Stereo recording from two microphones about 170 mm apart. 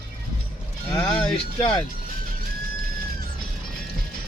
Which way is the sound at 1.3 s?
35° left (ahead or behind).